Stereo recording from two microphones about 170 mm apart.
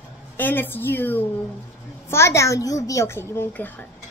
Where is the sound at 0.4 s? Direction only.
10° left (ahead or behind).